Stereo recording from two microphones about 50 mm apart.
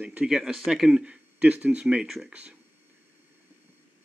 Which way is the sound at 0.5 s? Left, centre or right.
Centre.